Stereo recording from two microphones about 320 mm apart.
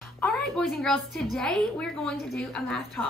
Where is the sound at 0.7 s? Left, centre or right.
Centre.